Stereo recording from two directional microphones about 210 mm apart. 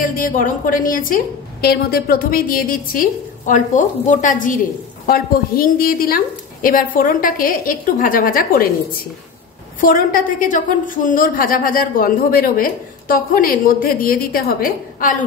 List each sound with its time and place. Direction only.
0.0 s a woman's voice: 40° left (ahead or behind)
9.8 s a woman's voice: 40° left (ahead or behind)